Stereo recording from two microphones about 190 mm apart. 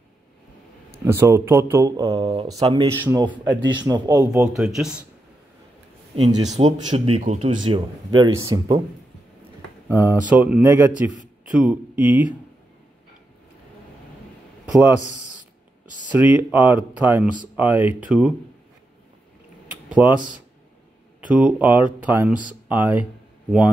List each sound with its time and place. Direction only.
0.9 s speech: 15° right (ahead or behind)
4.3 s speech: 5° right (ahead or behind)
6.4 s speech: 35° right (ahead or behind)
7.6 s speech: 25° right (ahead or behind)
9.8 s speech: 10° right (ahead or behind)
14.7 s a man's voice: 10° right (ahead or behind)
16.1 s speech: 10° right (ahead or behind)
19.9 s speech: 10° right (ahead or behind)
21.3 s speech: 5° right (ahead or behind)